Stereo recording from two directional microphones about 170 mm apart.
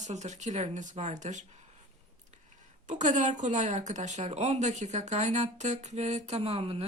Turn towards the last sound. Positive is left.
turn(degrees=-35)  # may be behind; listen again after turning